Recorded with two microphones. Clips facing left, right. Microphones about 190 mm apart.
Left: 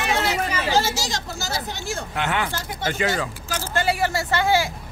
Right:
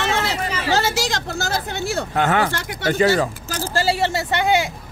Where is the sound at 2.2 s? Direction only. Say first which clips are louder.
Right 6 dB; 45° right (ahead or behind).